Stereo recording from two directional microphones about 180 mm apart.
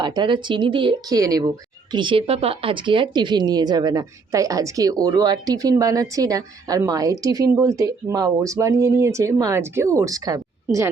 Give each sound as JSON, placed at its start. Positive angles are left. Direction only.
{"t": 0.0, "sound": "speech", "side_deg": -25}